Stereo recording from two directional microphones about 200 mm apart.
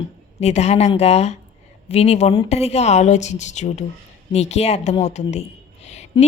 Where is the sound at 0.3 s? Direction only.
35° left (ahead or behind).